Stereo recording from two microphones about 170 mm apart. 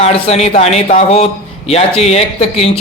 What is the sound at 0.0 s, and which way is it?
A man's voice, 40° left (ahead or behind).